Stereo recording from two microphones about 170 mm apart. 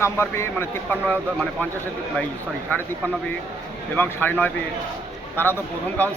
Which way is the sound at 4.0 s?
10° left (ahead or behind).